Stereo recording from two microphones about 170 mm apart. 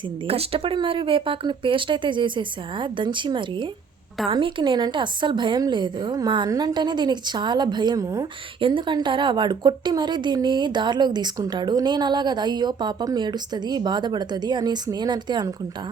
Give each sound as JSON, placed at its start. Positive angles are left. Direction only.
{"t": 0.3, "sound": "a woman's voice", "side_deg": -35}